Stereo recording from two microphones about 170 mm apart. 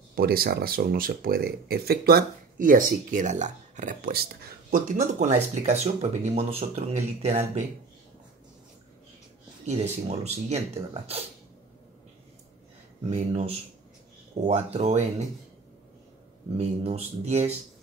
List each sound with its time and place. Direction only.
0.1 s speech: 60° right (ahead or behind); by 7.6 s 40° right (ahead or behind)
10.0 s speech: 40° right (ahead or behind)
13.1 s speech: 40° right (ahead or behind)
16.5 s speech: 40° right (ahead or behind)